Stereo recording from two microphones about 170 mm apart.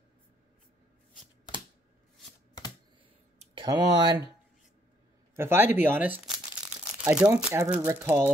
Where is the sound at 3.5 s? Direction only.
25° right (ahead or behind).